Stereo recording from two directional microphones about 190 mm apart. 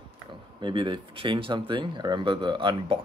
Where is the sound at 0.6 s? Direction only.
25° right (ahead or behind).